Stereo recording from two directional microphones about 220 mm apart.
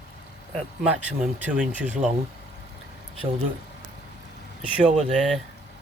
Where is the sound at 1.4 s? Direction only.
5° right (ahead or behind).